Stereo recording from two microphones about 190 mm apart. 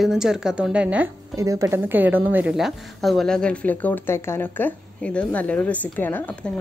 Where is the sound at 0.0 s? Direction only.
5° right (ahead or behind).